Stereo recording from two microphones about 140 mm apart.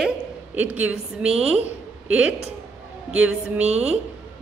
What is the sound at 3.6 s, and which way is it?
Speech, 50° right (ahead or behind).